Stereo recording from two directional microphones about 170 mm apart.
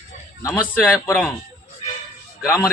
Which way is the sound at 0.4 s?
10° left (ahead or behind).